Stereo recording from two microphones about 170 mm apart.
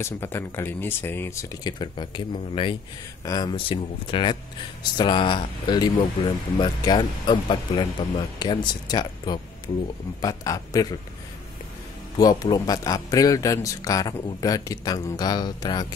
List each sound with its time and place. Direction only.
0.0 s speech: 15° left (ahead or behind)
12.2 s speech: 25° left (ahead or behind)